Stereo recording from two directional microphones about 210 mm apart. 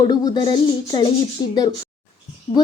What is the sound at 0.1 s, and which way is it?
A woman's voice, 20° left (ahead or behind).